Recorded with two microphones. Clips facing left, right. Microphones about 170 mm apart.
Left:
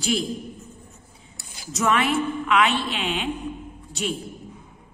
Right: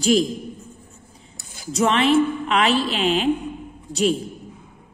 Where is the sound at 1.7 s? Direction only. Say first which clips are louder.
Right 5 dB; 30° right (ahead or behind).